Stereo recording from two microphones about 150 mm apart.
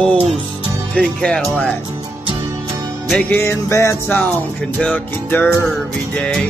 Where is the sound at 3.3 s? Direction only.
15° left (ahead or behind).